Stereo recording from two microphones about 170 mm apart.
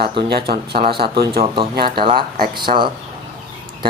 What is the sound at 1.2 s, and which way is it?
Speech, 60° right (ahead or behind).